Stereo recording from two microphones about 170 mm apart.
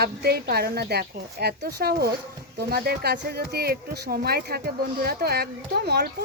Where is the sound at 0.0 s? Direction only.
70° right (ahead or behind).